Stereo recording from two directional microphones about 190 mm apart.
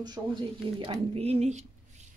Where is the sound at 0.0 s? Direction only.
20° right (ahead or behind).